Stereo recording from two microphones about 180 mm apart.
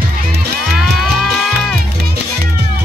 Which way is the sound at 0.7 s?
5° right (ahead or behind).